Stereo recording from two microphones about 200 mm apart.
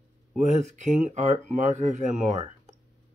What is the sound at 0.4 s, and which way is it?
Speech, 35° right (ahead or behind).